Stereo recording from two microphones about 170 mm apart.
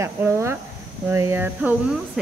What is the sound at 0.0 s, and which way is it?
Speech, 15° right (ahead or behind).